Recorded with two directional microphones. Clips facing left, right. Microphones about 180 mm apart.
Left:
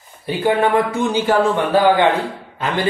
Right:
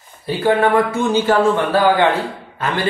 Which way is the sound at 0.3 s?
15° left (ahead or behind).